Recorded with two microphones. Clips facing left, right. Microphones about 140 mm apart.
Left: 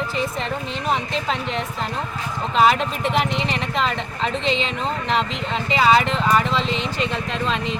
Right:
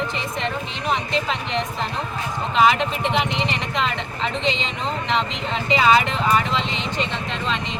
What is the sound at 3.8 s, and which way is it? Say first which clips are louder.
Speech: left 2 dB; 40° left (ahead or behind).